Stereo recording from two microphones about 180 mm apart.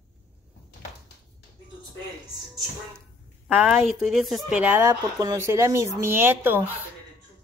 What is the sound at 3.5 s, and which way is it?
Speech, centre (ahead or behind).